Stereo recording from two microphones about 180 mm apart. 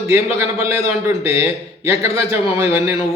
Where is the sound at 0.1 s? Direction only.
15° right (ahead or behind).